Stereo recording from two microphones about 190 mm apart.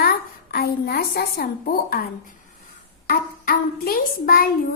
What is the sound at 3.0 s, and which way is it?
A woman's voice, 50° left (ahead or behind).